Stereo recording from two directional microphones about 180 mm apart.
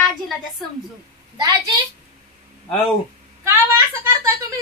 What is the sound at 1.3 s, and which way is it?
Speech, 20° right (ahead or behind).